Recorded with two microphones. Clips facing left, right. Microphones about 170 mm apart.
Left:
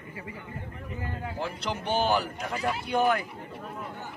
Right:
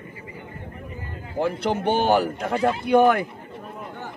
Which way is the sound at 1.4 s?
55° right (ahead or behind).